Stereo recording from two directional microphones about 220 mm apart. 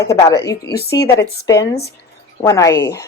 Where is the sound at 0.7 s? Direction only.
45° left (ahead or behind).